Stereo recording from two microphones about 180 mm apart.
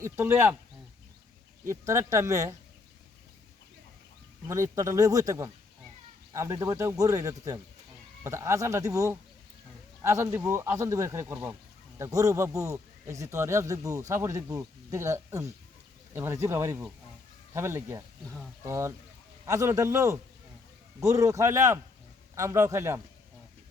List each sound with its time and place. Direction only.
0.0 s a man's voice: 15° right (ahead or behind)
1.6 s a man's voice: 15° right (ahead or behind)
4.4 s a man's voice: 15° right (ahead or behind)